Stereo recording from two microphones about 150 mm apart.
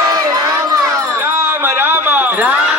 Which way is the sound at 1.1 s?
15° right (ahead or behind).